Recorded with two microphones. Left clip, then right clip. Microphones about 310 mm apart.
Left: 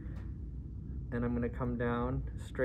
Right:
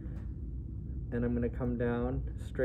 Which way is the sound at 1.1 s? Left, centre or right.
Centre.